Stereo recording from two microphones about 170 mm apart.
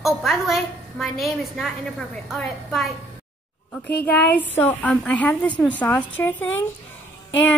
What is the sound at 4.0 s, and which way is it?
A woman's voice, 10° left (ahead or behind).